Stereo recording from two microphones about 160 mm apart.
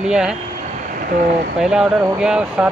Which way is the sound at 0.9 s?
65° right (ahead or behind).